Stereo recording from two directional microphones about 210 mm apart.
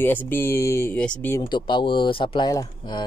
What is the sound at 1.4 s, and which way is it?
Speech, 20° left (ahead or behind).